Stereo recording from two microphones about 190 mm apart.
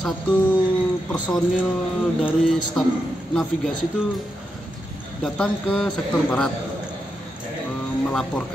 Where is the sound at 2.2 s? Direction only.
Centre (ahead or behind).